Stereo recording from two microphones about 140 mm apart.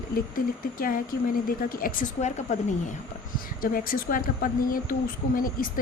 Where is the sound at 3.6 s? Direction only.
90° left.